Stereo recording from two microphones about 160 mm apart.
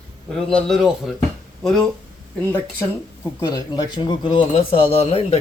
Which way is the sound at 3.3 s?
25° left (ahead or behind).